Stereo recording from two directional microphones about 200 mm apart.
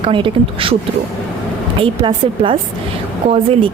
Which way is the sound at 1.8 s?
25° right (ahead or behind).